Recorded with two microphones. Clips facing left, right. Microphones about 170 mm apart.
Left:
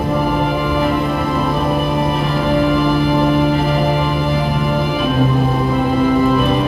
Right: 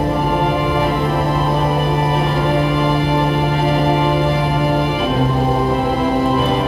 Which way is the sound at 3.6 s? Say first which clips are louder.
Right 1 dB; 30° right (ahead or behind).